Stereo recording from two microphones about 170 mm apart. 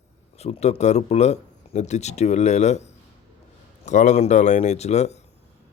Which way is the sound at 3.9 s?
45° left (ahead or behind).